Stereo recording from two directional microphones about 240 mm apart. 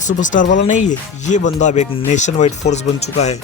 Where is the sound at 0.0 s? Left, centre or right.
Left.